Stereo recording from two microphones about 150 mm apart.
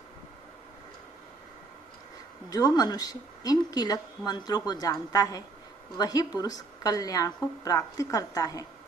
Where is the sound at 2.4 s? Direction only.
25° left (ahead or behind).